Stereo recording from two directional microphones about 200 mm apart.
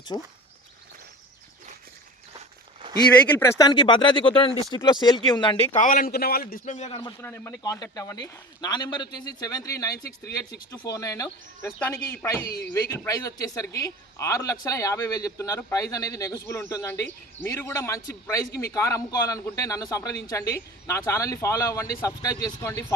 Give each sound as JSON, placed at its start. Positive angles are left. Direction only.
{"t": 0.1, "sound": "speech", "side_deg": 25}
{"t": 3.2, "sound": "speech", "side_deg": 10}
{"t": 5.7, "sound": "a man's voice", "side_deg": 45}
{"t": 7.2, "sound": "speech", "side_deg": 10}